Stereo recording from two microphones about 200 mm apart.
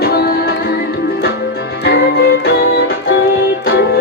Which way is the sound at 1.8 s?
55° left (ahead or behind).